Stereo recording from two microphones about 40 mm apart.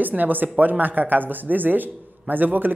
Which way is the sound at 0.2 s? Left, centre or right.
Right.